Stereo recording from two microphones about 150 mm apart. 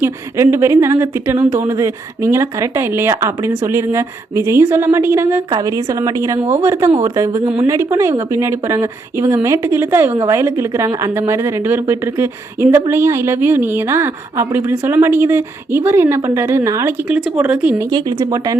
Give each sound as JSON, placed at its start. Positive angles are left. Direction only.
{"t": 0.0, "sound": "a woman's voice", "side_deg": -15}
{"t": 17.9, "sound": "a woman's voice", "side_deg": -25}